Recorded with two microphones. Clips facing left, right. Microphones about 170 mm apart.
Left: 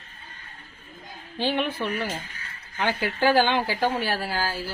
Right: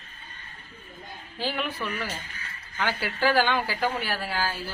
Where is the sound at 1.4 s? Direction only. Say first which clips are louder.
Left 5 dB; 25° left (ahead or behind).